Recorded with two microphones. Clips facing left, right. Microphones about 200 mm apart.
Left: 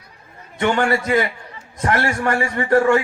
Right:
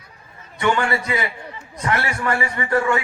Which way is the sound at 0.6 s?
45° left (ahead or behind).